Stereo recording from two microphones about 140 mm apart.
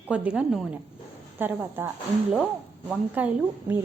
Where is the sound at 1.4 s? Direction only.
15° right (ahead or behind).